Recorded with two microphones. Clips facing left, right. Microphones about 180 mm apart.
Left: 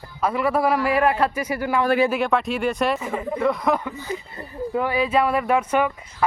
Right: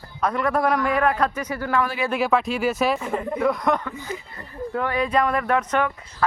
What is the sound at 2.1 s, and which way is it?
Speech, centre (ahead or behind).